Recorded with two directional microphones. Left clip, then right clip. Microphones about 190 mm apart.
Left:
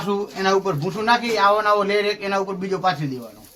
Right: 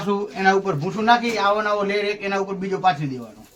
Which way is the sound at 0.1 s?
25° right (ahead or behind).